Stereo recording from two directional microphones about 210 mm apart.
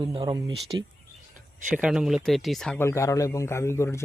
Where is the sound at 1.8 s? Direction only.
5° right (ahead or behind).